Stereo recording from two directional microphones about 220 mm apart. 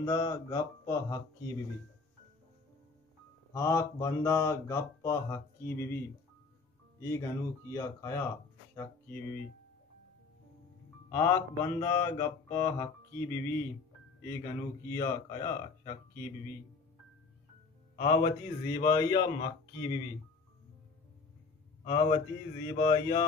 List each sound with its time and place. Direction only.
0.0 s music: 15° left (ahead or behind)
3.5 s music: 15° left (ahead or behind)
7.0 s music: 15° left (ahead or behind)
8.7 s speech: 10° left (ahead or behind)
11.1 s music: 10° left (ahead or behind)
17.9 s music: 20° left (ahead or behind)
19.8 s speech: 20° left (ahead or behind)
21.8 s music: 20° left (ahead or behind)